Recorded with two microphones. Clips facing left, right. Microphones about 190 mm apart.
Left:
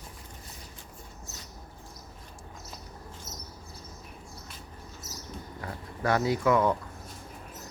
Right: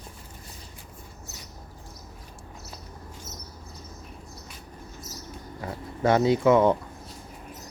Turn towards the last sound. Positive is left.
turn(degrees=-25)  # may be behind; listen again after turning